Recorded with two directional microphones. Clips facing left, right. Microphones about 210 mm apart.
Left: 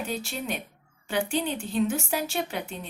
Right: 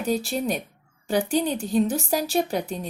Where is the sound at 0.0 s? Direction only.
35° right (ahead or behind).